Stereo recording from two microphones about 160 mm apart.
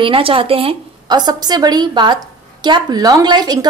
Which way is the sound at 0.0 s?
35° right (ahead or behind).